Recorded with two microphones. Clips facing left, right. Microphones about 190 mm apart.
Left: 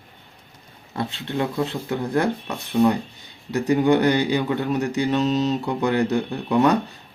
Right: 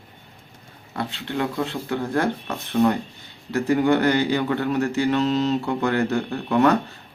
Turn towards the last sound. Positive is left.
turn(degrees=15)  # may be behind; listen again after turning